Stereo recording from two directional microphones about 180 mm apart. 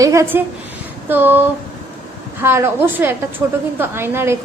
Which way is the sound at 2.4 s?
15° right (ahead or behind).